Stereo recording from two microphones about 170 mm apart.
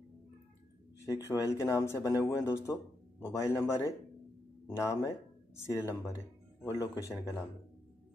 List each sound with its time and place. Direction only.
1.4 s speech: 15° left (ahead or behind)